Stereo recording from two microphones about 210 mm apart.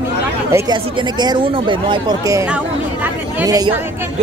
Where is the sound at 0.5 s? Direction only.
15° right (ahead or behind).